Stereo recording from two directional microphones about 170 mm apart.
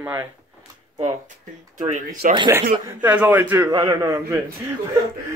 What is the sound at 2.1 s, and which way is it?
Speech, 50° right (ahead or behind).